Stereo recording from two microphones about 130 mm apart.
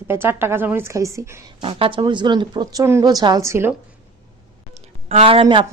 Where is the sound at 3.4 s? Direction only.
20° right (ahead or behind).